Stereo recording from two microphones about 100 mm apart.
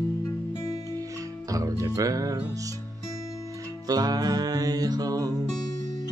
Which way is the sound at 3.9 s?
40° right (ahead or behind).